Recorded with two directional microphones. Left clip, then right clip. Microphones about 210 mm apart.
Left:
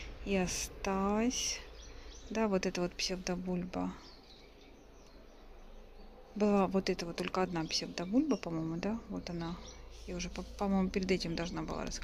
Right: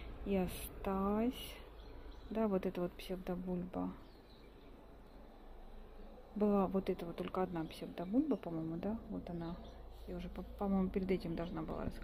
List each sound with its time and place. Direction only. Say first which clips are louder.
0.0 s speech: left 4 dB; 5° left (ahead or behind)
6.3 s speech: left 4 dB; 5° left (ahead or behind)